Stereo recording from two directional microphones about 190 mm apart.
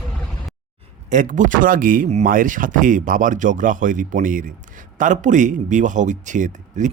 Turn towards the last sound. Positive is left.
turn(degrees=-40)  # may be behind; listen again after turning